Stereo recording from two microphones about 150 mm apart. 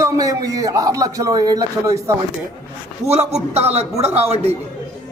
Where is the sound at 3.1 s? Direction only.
45° right (ahead or behind).